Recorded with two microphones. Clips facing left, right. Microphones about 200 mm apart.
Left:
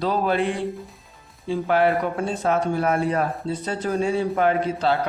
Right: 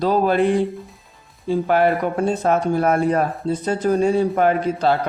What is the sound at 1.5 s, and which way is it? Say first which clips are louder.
Speech: right 3 dB; 45° right (ahead or behind).